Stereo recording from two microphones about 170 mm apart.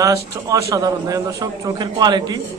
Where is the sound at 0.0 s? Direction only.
20° right (ahead or behind).